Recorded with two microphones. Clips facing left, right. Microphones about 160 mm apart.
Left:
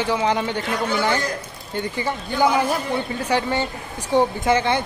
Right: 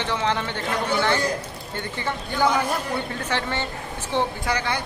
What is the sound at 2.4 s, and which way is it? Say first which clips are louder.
A woman's voice: left 3 dB; 10° left (ahead or behind).